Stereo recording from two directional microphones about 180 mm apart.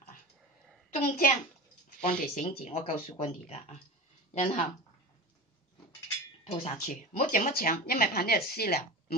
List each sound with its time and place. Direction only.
0.8 s a child's voice: 45° left (ahead or behind)
6.4 s speech: 35° left (ahead or behind); by 8.8 s 60° left (ahead or behind)